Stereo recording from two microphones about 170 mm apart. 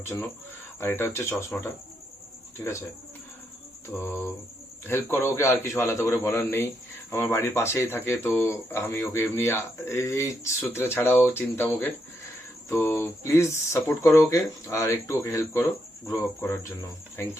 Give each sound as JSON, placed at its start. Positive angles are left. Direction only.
{"t": 0.0, "sound": "speech", "side_deg": 15}
{"t": 3.9, "sound": "speech", "side_deg": 10}